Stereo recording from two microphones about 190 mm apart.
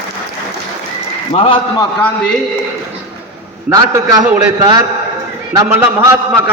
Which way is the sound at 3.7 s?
15° right (ahead or behind).